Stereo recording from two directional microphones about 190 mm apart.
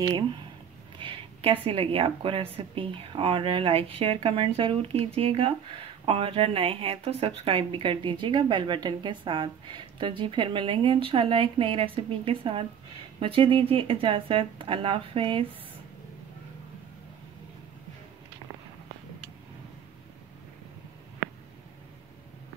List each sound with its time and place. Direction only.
0.0 s a woman's voice: 25° right (ahead or behind)